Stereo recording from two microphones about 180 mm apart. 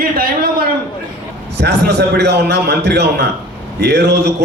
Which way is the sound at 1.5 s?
70° right (ahead or behind).